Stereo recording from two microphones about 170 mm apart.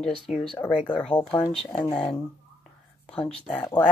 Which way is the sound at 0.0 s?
Centre (ahead or behind).